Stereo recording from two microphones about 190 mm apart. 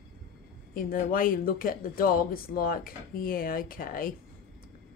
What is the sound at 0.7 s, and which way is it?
Speech, 45° left (ahead or behind).